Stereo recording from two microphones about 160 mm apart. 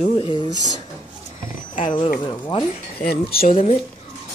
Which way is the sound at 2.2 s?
30° left (ahead or behind).